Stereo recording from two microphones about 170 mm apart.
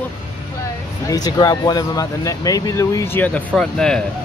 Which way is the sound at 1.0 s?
20° left (ahead or behind).